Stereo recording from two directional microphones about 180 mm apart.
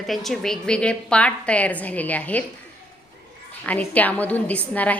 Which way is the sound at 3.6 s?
10° left (ahead or behind).